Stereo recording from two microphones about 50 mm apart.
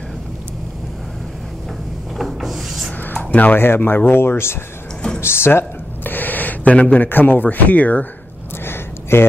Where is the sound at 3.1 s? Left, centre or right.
Left.